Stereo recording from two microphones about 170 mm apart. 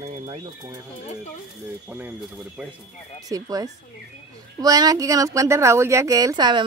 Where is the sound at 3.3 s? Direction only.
20° right (ahead or behind).